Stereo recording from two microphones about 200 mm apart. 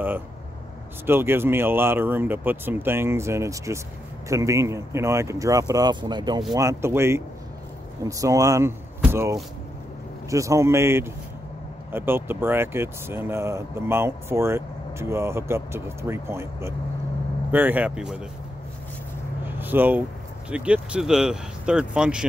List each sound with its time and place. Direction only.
1.0 s speech: 10° right (ahead or behind)
19.4 s a sound: 10° right (ahead or behind)
20.4 s speech: 5° right (ahead or behind)